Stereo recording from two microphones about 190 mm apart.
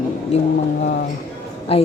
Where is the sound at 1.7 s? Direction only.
30° left (ahead or behind).